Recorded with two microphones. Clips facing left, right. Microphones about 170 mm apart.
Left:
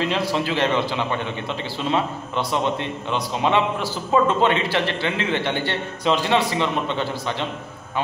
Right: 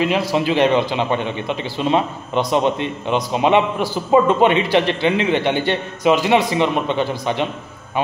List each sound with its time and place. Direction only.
0.3 s a man's voice: 15° right (ahead or behind)